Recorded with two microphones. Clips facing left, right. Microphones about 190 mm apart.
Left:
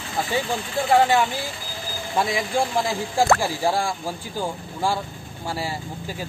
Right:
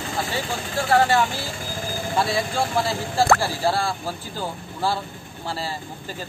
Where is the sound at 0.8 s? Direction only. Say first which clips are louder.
Left 1 dB; 20° left (ahead or behind).